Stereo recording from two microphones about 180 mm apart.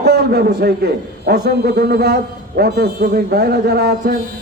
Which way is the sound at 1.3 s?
65° right (ahead or behind).